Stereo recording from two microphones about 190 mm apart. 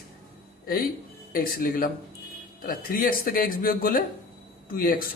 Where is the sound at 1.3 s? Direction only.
50° left (ahead or behind).